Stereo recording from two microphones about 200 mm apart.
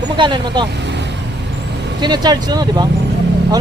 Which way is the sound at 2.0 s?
20° right (ahead or behind).